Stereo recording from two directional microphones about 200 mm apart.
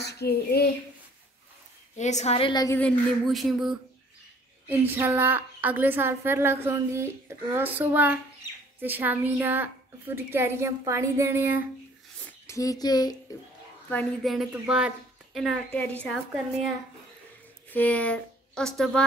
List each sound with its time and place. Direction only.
0.0 s a child's voice: 55° left (ahead or behind)
2.0 s a woman's voice: 35° left (ahead or behind); by 2.8 s 20° left (ahead or behind)
2.8 s a woman's voice: centre (ahead or behind)
12.3 s speech: 15° left (ahead or behind)
13.8 s speech: 5° left (ahead or behind)
17.6 s speech: 10° left (ahead or behind)